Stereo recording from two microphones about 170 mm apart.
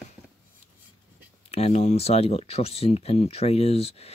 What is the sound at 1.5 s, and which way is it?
Speech, 40° left (ahead or behind).